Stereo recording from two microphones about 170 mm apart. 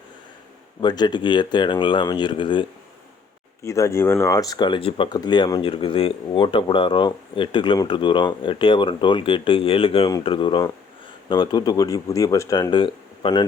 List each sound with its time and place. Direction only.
0.8 s speech: 25° left (ahead or behind)
3.6 s speech: 15° left (ahead or behind)